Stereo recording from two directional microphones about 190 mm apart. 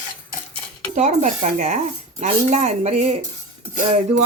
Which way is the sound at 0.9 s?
40° right (ahead or behind).